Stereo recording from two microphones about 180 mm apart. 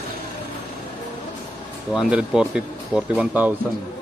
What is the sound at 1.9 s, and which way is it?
Speech, 5° right (ahead or behind).